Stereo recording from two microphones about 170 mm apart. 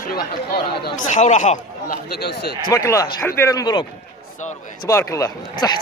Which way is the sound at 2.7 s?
20° left (ahead or behind).